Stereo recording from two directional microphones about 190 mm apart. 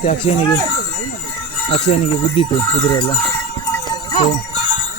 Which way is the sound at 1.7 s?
30° left (ahead or behind).